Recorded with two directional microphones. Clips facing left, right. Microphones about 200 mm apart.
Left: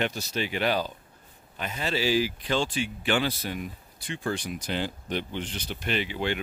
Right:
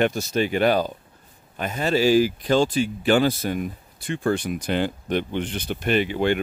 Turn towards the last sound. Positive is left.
turn(degrees=-50)  # may be behind; listen again after turning